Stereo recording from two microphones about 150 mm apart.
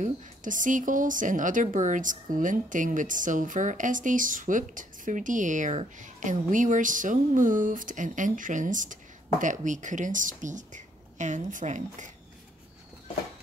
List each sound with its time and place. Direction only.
0.0 s a woman's voice: 60° right (ahead or behind)